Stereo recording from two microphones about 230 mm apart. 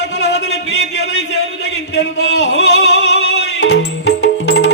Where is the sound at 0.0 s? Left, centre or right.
Left.